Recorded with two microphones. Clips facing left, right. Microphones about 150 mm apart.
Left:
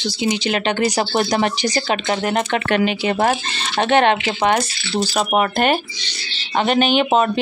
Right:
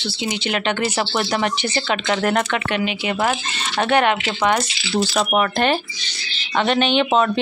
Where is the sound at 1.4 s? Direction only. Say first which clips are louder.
Left 3 dB; 35° left (ahead or behind).